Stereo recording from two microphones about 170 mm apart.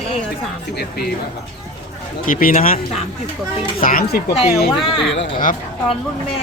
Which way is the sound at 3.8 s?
60° left (ahead or behind).